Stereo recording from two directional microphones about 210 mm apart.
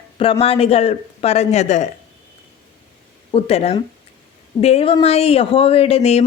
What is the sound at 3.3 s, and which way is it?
Speech, 30° left (ahead or behind).